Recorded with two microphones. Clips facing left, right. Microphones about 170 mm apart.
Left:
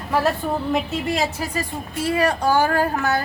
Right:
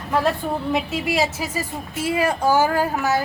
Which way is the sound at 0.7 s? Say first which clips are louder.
Even; centre (ahead or behind).